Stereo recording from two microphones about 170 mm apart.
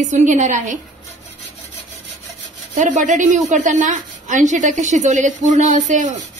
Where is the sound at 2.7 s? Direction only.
45° right (ahead or behind).